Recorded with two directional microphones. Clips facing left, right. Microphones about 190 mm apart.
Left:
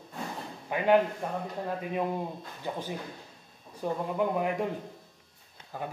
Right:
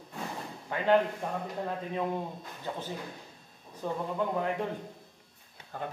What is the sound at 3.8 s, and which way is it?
Speech, 15° left (ahead or behind).